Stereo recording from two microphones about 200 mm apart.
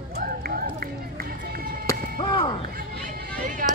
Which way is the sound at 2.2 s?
25° left (ahead or behind).